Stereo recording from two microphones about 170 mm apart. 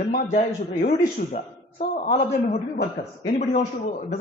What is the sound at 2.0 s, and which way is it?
A man's voice, 40° left (ahead or behind).